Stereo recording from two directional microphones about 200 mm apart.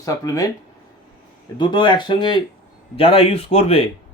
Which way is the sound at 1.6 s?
20° left (ahead or behind).